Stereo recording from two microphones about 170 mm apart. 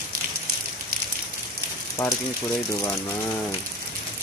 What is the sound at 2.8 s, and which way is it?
Speech, 20° left (ahead or behind).